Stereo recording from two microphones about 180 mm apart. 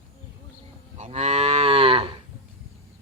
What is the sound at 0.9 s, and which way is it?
Cattle, 40° right (ahead or behind).